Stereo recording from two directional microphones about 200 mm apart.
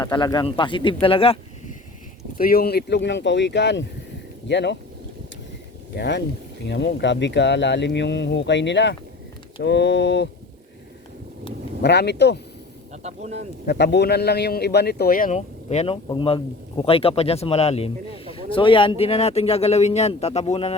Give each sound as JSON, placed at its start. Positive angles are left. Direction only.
{"t": 0.0, "sound": "speech", "side_deg": 20}
{"t": 2.4, "sound": "speech", "side_deg": 50}
{"t": 6.0, "sound": "speech", "side_deg": 60}
{"t": 11.8, "sound": "speech", "side_deg": 55}
{"t": 12.9, "sound": "speech", "side_deg": -35}
{"t": 13.7, "sound": "speech", "side_deg": 55}